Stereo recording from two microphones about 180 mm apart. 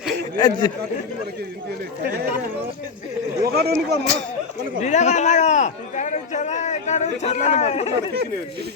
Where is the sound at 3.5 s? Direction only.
60° right (ahead or behind).